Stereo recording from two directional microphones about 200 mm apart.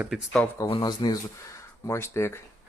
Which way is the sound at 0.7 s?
20° left (ahead or behind).